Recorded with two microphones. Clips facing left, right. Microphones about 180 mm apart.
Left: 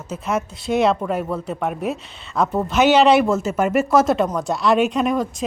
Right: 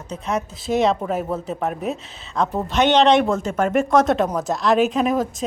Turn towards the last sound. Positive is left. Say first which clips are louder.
# even
turn(degrees=0)  # may be behind; listen again after turning